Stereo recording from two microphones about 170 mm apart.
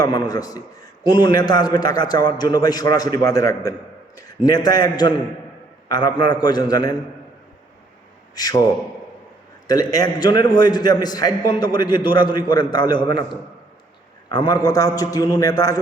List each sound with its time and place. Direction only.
0.0 s a man's voice: 20° left (ahead or behind)
8.4 s a man's voice: 20° left (ahead or behind)
9.6 s a man's voice: 20° left (ahead or behind)